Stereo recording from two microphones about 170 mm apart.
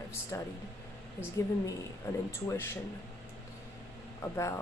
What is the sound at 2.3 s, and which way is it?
Speech, 15° left (ahead or behind).